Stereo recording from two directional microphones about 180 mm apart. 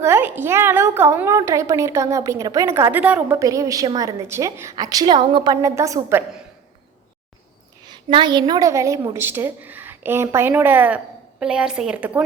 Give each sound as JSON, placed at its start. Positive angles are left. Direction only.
{"t": 0.0, "sound": "a woman's voice", "side_deg": -10}
{"t": 7.9, "sound": "a woman's voice", "side_deg": -25}